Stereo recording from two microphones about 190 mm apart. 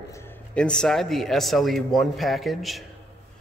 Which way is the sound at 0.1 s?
10° left (ahead or behind).